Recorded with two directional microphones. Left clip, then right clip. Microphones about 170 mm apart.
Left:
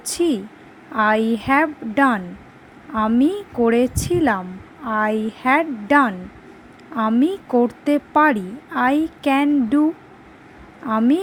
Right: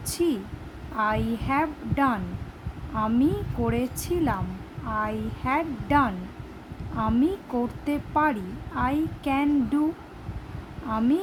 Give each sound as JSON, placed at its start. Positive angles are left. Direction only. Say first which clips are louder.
{"t": 0.0, "sound": "a sound", "louder": "left 6 dB", "side_deg": 35}
{"t": 0.9, "sound": "a woman's voice", "louder": "left 8 dB", "side_deg": 35}
{"t": 10.8, "sound": "a woman's voice", "louder": "left 7 dB", "side_deg": 35}